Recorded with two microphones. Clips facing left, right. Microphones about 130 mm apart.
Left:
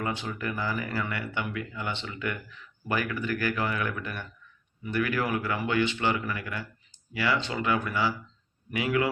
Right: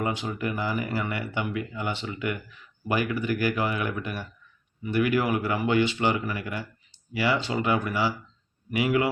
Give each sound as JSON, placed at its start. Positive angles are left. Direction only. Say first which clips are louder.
{"t": 0.0, "sound": "speech", "louder": "right 3 dB", "side_deg": -15}